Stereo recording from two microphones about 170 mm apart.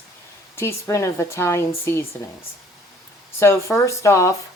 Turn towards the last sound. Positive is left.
turn(degrees=15)  # may be behind; listen again after turning